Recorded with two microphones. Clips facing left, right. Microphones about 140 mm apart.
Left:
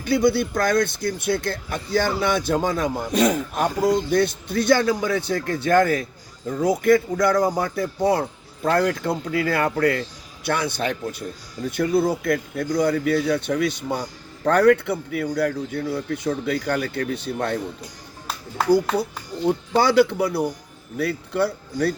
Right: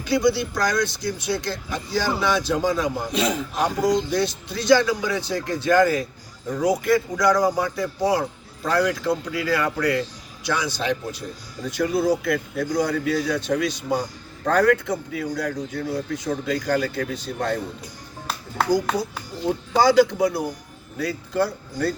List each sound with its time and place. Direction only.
0.0 s speech: 55° left (ahead or behind)
19.7 s speech: 60° left (ahead or behind)